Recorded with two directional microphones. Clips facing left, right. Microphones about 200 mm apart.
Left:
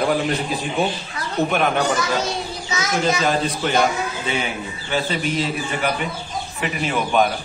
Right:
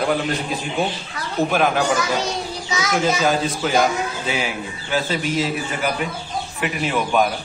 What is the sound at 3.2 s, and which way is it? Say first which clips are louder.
A man's voice: right 1 dB; centre (ahead or behind).